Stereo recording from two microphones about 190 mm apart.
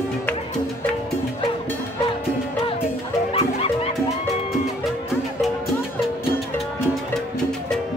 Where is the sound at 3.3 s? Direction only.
30° left (ahead or behind).